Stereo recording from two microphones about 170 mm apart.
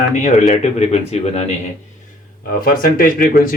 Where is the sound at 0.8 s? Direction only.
40° left (ahead or behind).